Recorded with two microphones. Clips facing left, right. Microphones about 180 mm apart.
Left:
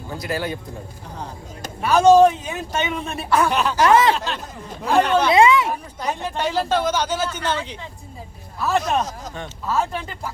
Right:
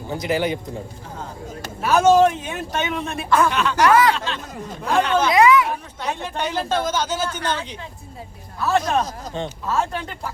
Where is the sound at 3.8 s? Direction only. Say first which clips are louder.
Even; 25° left (ahead or behind).